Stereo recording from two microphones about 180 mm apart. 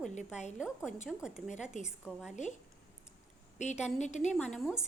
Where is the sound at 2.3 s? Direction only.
40° left (ahead or behind).